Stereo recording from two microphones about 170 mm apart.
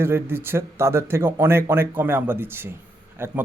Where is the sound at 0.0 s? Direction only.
15° right (ahead or behind).